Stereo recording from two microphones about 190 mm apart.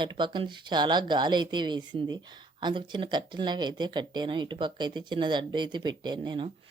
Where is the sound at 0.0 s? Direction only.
25° right (ahead or behind).